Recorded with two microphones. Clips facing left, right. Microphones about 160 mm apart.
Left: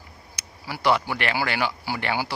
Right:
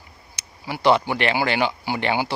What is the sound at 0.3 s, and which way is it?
Speech, 20° right (ahead or behind).